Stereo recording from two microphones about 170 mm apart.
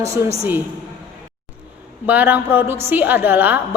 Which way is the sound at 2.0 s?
10° right (ahead or behind).